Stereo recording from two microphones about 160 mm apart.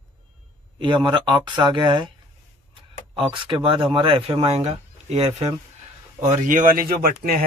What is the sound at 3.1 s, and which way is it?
A man's voice, 30° right (ahead or behind).